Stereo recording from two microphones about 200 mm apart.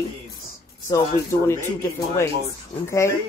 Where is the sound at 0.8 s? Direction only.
15° left (ahead or behind).